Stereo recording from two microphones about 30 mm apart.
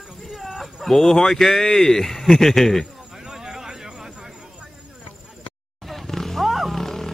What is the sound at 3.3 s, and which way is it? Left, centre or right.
Vehicle, right.